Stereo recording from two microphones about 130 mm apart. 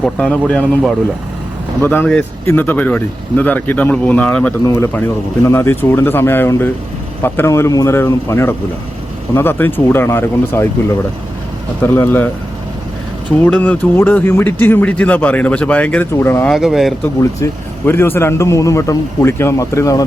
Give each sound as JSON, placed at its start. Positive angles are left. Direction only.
{"t": 0.0, "sound": "speech", "side_deg": 5}
{"t": 1.8, "sound": "a man's voice", "side_deg": 15}
{"t": 11.8, "sound": "speech", "side_deg": 15}
{"t": 13.4, "sound": "speech", "side_deg": 10}
{"t": 16.5, "sound": "speech", "side_deg": 0}
{"t": 17.4, "sound": "a man's voice", "side_deg": 20}